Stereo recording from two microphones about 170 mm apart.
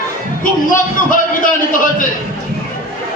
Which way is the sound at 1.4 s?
50° left (ahead or behind).